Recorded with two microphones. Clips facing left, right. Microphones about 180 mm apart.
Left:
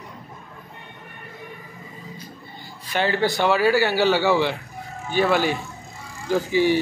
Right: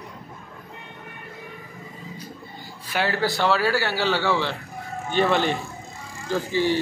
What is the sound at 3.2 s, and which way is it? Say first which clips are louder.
A man's voice: left 3 dB; 15° left (ahead or behind).